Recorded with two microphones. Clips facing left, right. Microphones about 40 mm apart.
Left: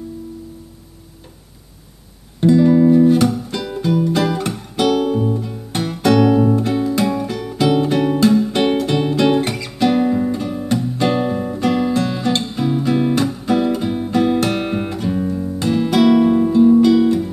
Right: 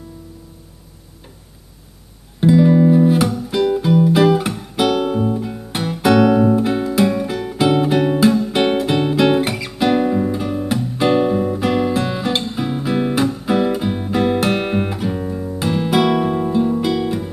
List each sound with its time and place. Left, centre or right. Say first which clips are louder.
2.4 s music: left 1 dB; centre